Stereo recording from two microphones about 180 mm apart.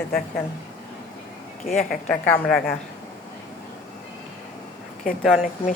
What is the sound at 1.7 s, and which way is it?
Speech, 40° left (ahead or behind).